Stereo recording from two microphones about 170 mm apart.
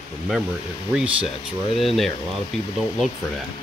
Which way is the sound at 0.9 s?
5° right (ahead or behind).